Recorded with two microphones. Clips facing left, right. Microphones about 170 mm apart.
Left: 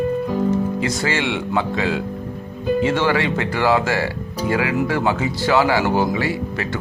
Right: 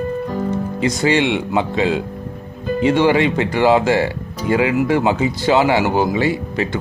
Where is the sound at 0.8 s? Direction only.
20° right (ahead or behind).